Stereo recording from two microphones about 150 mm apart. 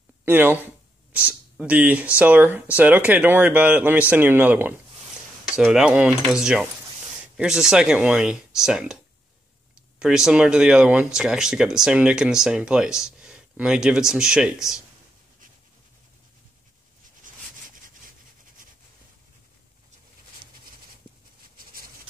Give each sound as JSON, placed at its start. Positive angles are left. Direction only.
{"t": 0.2, "sound": "speech", "side_deg": -15}
{"t": 9.9, "sound": "speech", "side_deg": -5}
{"t": 17.2, "sound": "a sound", "side_deg": -65}